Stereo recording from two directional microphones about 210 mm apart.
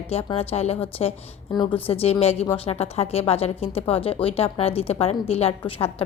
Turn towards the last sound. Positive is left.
turn(degrees=30)  # may be behind; listen again after turning